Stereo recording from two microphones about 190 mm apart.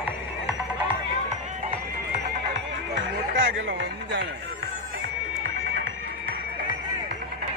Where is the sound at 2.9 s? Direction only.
75° right (ahead or behind).